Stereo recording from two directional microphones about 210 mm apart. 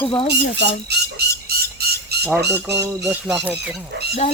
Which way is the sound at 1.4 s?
50° right (ahead or behind).